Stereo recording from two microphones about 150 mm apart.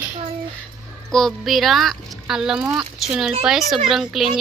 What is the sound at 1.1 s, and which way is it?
A woman's voice, centre (ahead or behind).